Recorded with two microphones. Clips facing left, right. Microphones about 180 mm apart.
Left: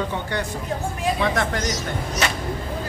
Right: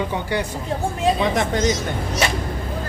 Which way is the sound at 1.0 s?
20° right (ahead or behind).